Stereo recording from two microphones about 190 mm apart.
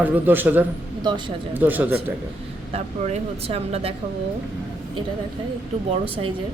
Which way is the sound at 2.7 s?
30° right (ahead or behind).